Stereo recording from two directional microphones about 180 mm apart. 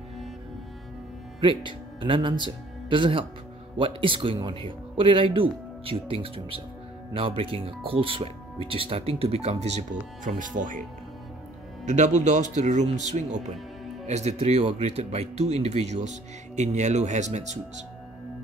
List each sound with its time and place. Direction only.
1.4 s speech: 25° right (ahead or behind); by 10.8 s 45° right (ahead or behind)
11.8 s speech: 40° right (ahead or behind)